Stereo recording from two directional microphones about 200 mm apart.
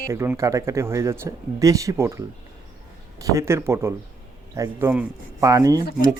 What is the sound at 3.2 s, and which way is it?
Speech, 15° right (ahead or behind).